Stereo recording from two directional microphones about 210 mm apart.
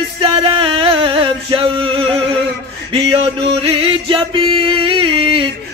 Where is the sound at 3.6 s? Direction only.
25° right (ahead or behind).